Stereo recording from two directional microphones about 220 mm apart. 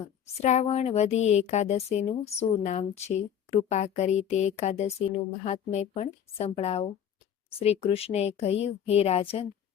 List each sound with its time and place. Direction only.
0.3 s a woman's voice: 30° left (ahead or behind)